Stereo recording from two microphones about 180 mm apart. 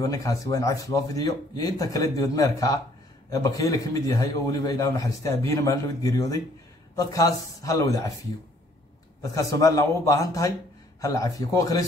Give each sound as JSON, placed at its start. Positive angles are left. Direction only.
{"t": 0.0, "sound": "a man's voice", "side_deg": 20}
{"t": 9.2, "sound": "speech", "side_deg": 20}